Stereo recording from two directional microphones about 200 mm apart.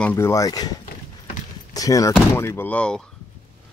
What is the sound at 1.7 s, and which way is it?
Speech, 15° left (ahead or behind).